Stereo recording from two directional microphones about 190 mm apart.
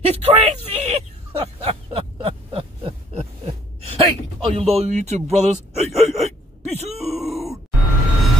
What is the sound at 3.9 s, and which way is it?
Speech, 30° right (ahead or behind).